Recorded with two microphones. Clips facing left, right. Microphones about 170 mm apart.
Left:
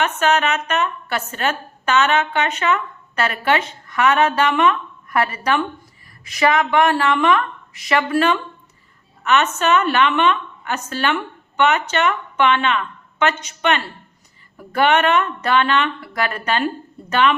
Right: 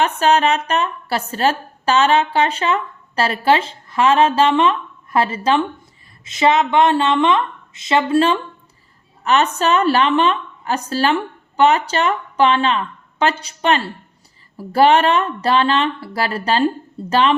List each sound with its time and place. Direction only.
0.2 s a woman's voice: 35° right (ahead or behind)